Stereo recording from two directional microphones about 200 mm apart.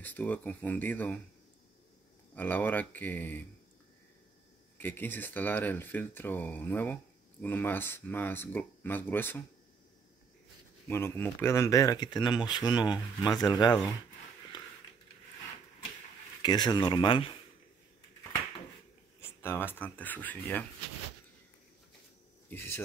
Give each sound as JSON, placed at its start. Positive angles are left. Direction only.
{"t": 0.0, "sound": "speech", "side_deg": 10}
{"t": 2.3, "sound": "speech", "side_deg": 10}
{"t": 4.7, "sound": "speech", "side_deg": 10}
{"t": 10.9, "sound": "speech", "side_deg": 10}
{"t": 14.5, "sound": "a sound", "side_deg": 20}
{"t": 16.4, "sound": "speech", "side_deg": 20}
{"t": 19.4, "sound": "speech", "side_deg": 10}
{"t": 22.5, "sound": "speech", "side_deg": 10}